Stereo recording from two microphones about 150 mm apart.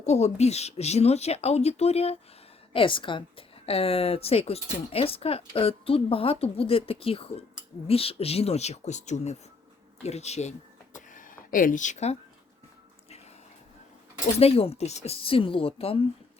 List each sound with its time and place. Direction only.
0.0 s a woman's voice: 45° left (ahead or behind)
10.9 s a sound: 60° left (ahead or behind)
14.3 s a woman's voice: 40° left (ahead or behind)